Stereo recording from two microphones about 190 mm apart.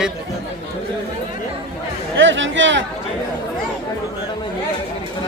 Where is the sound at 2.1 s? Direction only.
80° right.